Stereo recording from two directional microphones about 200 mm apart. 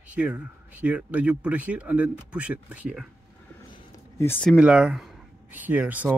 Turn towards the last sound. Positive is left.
turn(degrees=-10)  # may be behind; listen again after turning